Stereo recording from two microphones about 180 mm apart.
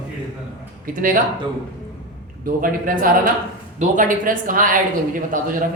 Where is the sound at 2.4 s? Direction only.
50° right (ahead or behind).